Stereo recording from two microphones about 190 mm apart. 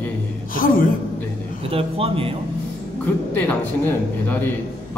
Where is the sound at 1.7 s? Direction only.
30° right (ahead or behind).